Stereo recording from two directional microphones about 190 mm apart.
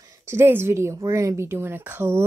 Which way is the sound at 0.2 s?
15° right (ahead or behind).